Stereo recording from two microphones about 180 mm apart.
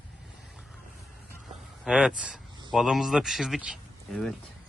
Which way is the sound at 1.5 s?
5° right (ahead or behind).